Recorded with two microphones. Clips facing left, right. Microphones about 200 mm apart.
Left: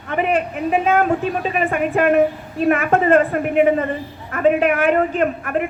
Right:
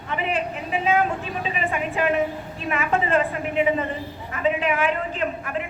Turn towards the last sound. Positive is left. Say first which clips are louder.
# left 7 dB
turn(degrees=55)  # may be behind; listen again after turning